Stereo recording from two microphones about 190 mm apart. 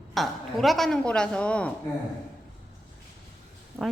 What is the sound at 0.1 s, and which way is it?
Speech, centre (ahead or behind).